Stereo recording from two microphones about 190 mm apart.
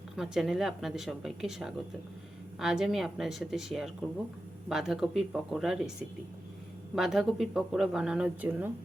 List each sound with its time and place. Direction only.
0.2 s speech: centre (ahead or behind)
6.9 s speech: centre (ahead or behind)